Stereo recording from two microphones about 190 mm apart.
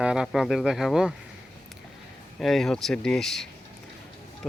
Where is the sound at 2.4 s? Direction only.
Centre (ahead or behind).